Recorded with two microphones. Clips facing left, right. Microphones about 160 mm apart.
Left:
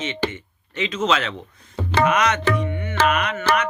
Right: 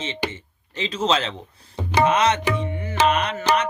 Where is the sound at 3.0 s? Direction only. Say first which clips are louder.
Right 1 dB; 30° right (ahead or behind).